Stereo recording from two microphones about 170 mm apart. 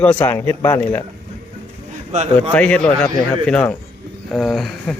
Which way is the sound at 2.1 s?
45° right (ahead or behind).